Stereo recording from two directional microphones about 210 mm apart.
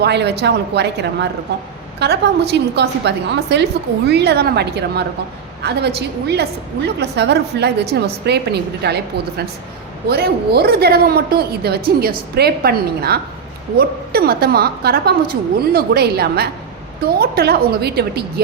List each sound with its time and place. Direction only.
0.0 s a woman's voice: 50° right (ahead or behind)